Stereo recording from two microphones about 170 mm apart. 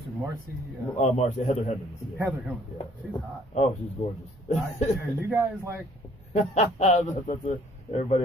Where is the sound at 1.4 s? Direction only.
45° left (ahead or behind).